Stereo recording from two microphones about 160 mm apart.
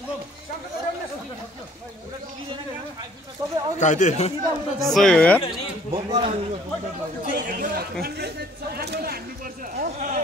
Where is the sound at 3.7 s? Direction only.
50° left (ahead or behind).